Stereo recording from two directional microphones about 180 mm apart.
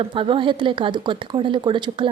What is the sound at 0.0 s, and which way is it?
Speech, 30° right (ahead or behind).